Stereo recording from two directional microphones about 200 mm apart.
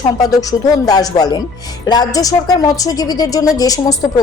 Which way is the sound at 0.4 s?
20° left (ahead or behind).